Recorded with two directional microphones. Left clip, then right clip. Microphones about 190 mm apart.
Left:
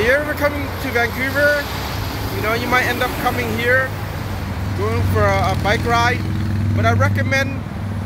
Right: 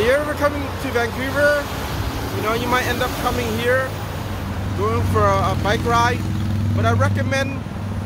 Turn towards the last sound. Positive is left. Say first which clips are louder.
# left 2 dB
turn(degrees=-10)  # may be behind; listen again after turning